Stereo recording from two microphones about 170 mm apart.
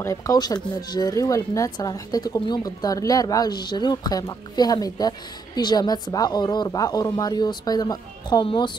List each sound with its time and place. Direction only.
0.0 s speech: 20° left (ahead or behind)